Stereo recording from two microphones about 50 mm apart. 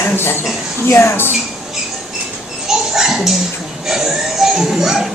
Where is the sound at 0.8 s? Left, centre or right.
Left.